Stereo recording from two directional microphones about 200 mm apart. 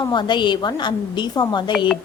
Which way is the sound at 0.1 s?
20° left (ahead or behind).